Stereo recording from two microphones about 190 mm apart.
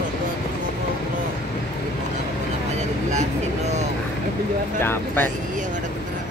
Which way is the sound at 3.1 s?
35° right (ahead or behind).